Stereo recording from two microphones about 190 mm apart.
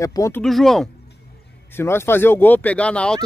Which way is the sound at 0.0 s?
15° left (ahead or behind).